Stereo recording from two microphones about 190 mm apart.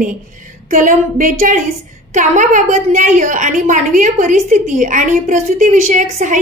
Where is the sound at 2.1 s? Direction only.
40° right (ahead or behind).